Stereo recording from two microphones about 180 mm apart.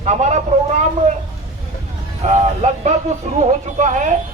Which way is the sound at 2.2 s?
40° right (ahead or behind).